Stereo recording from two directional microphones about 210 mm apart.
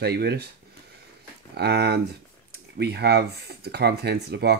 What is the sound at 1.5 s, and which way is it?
Speech, 50° right (ahead or behind).